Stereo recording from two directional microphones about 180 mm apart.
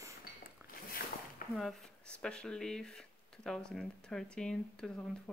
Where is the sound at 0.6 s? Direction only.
10° right (ahead or behind).